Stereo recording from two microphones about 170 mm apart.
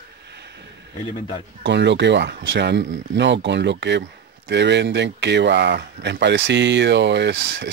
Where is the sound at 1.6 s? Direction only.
90° right.